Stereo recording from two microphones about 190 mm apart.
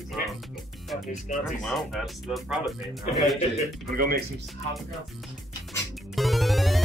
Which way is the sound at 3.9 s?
50° right (ahead or behind).